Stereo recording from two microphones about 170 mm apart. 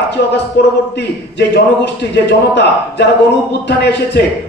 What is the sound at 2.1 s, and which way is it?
A man's voice, 85° left.